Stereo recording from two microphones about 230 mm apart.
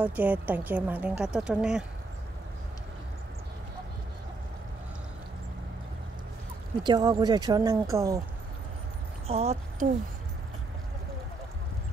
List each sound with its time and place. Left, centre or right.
0.0 s a woman's voice: centre
6.8 s a woman's voice: centre
9.3 s speech: right